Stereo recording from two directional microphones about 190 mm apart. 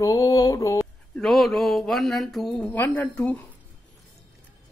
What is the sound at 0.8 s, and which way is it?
Speech, centre (ahead or behind).